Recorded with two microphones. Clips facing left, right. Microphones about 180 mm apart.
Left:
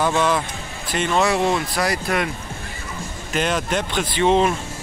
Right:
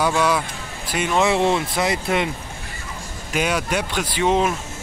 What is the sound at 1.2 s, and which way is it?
Speech, 25° right (ahead or behind).